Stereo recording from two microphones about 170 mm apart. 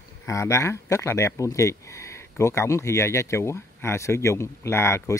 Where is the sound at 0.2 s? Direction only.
15° left (ahead or behind).